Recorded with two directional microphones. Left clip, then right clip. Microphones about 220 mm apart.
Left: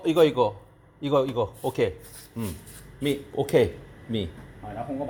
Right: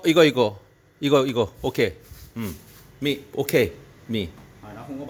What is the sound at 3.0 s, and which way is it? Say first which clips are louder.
A man's voice: right 2 dB; 30° right (ahead or behind).